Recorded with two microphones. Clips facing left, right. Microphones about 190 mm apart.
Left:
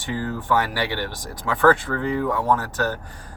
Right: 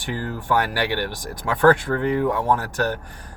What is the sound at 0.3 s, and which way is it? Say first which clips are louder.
Speech: right 1 dB; 15° right (ahead or behind).